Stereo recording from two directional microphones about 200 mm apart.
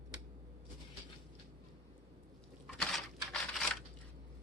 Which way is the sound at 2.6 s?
Centre (ahead or behind).